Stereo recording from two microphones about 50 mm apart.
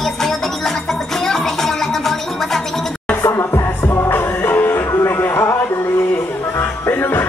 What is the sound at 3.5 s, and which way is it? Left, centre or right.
Music, left.